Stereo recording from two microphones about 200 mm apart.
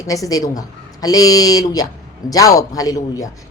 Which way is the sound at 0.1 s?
15° left (ahead or behind).